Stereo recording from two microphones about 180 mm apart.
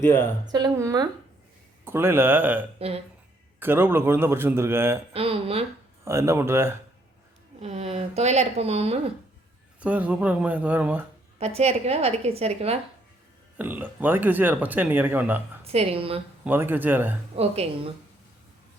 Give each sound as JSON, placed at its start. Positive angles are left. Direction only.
{"t": 0.5, "sound": "speech", "side_deg": -20}
{"t": 2.7, "sound": "speech", "side_deg": -35}
{"t": 3.6, "sound": "speech", "side_deg": -10}
{"t": 5.1, "sound": "a woman's voice", "side_deg": -30}
{"t": 6.1, "sound": "speech", "side_deg": -15}
{"t": 7.6, "sound": "a woman's voice", "side_deg": -35}
{"t": 9.8, "sound": "speech", "side_deg": -10}
{"t": 11.3, "sound": "a woman's voice", "side_deg": -35}
{"t": 13.6, "sound": "speech", "side_deg": -10}
{"t": 15.6, "sound": "a woman's voice", "side_deg": -35}
{"t": 16.4, "sound": "speech", "side_deg": -10}
{"t": 17.3, "sound": "a woman's voice", "side_deg": -35}